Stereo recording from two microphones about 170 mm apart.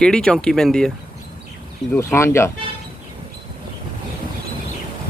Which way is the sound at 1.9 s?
15° left (ahead or behind).